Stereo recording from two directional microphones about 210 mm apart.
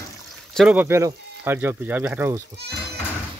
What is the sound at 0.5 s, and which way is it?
Speech, 5° right (ahead or behind).